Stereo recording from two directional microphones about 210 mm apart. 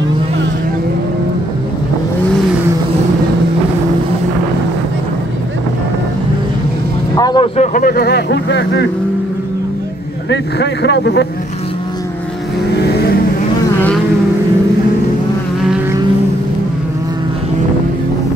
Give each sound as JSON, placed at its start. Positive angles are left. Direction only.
{"t": 7.2, "sound": "vehicle", "side_deg": 20}
{"t": 7.5, "sound": "speech", "side_deg": 35}
{"t": 10.3, "sound": "speech", "side_deg": 55}
{"t": 12.8, "sound": "vehicle", "side_deg": 50}